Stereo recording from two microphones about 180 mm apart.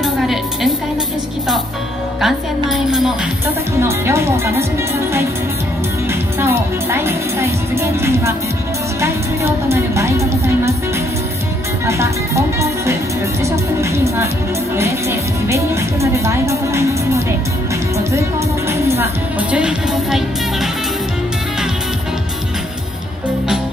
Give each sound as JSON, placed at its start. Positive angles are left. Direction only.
{"t": 0.0, "sound": "music", "side_deg": 0}
{"t": 2.2, "sound": "music", "side_deg": 0}
{"t": 3.8, "sound": "a woman's voice", "side_deg": -15}
{"t": 6.4, "sound": "a woman's voice", "side_deg": -15}
{"t": 11.8, "sound": "music", "side_deg": -15}
{"t": 13.4, "sound": "a woman's voice", "side_deg": -15}
{"t": 18.7, "sound": "music", "side_deg": -15}
{"t": 19.5, "sound": "music", "side_deg": -5}